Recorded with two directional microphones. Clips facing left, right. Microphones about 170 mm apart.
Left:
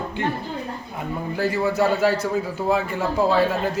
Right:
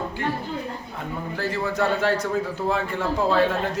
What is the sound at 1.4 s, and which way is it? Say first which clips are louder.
Speech: left 4 dB; 10° left (ahead or behind).